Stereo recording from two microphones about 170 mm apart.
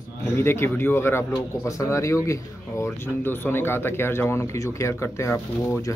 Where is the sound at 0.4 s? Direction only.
15° left (ahead or behind).